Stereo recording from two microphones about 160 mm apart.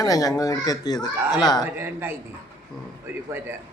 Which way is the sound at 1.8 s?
15° right (ahead or behind).